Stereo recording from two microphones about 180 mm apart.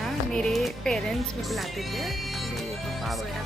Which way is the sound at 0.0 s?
Centre (ahead or behind).